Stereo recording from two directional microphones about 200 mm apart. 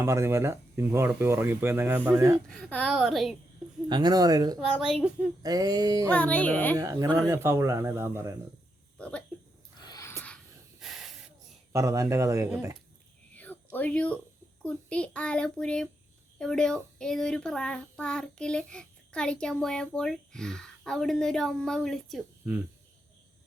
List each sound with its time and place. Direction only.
0.0 s speech: 15° right (ahead or behind)
2.5 s speech: 5° left (ahead or behind)
3.8 s speech: 20° right (ahead or behind)
4.6 s speech: centre (ahead or behind)
5.4 s speech: 20° right (ahead or behind)
6.1 s speech: 5° left (ahead or behind)
6.7 s speech: 15° right (ahead or behind)
9.0 s a sound: 5° left (ahead or behind)
10.8 s hiss: 5° right (ahead or behind)
11.7 s speech: 15° right (ahead or behind)
13.3 s a sound: 10° left (ahead or behind)
14.6 s speech: 5° left (ahead or behind)